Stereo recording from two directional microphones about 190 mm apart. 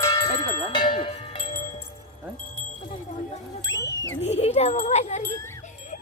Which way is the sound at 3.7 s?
15° left (ahead or behind).